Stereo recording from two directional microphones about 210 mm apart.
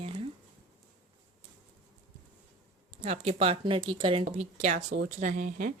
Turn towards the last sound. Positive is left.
turn(degrees=-40)  # may be behind; listen again after turning